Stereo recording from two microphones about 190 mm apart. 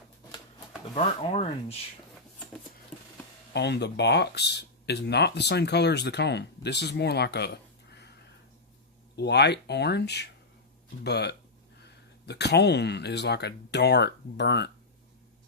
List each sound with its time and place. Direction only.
0.9 s speech: 30° left (ahead or behind)
3.5 s speech: 60° left (ahead or behind)
9.1 s speech: 60° left (ahead or behind)